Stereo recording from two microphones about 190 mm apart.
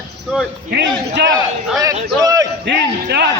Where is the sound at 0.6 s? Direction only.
60° right (ahead or behind).